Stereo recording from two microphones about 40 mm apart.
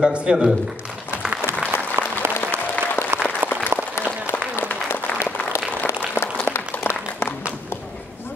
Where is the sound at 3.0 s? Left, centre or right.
Left.